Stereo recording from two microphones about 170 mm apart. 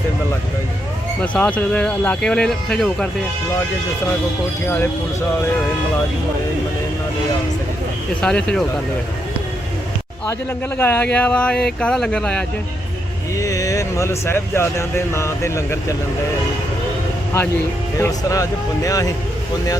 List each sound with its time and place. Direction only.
1.2 s speech: 10° left (ahead or behind)
8.2 s speech: 5° left (ahead or behind)
10.8 s speech: 10° left (ahead or behind)
13.4 s speech: 20° left (ahead or behind)
17.9 s speech: 20° left (ahead or behind)